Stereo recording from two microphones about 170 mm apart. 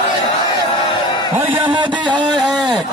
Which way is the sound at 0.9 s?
30° left (ahead or behind).